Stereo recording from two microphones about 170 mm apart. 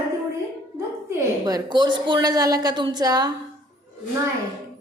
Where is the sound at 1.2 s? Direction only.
20° right (ahead or behind).